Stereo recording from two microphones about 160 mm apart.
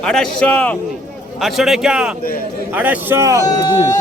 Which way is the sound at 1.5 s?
Centre (ahead or behind).